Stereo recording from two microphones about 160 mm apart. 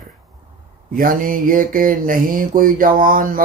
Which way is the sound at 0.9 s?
60° right (ahead or behind).